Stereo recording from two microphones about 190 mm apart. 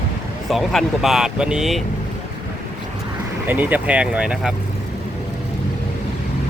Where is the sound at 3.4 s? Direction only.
10° right (ahead or behind).